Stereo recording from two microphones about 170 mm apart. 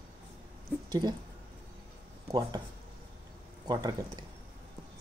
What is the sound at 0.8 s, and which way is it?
Speech, 25° right (ahead or behind).